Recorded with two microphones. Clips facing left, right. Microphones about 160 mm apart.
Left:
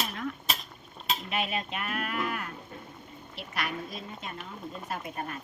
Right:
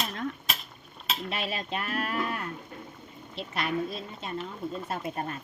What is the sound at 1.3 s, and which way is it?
A woman's voice, 35° right (ahead or behind).